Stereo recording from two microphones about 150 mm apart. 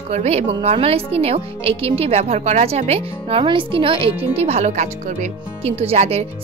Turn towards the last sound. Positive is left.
turn(degrees=-45)  # may be behind; listen again after turning